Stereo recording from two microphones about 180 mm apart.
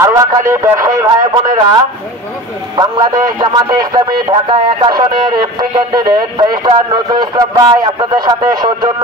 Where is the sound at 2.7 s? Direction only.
25° right (ahead or behind).